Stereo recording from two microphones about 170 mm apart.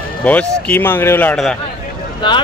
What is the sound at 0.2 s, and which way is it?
Speech, 10° left (ahead or behind).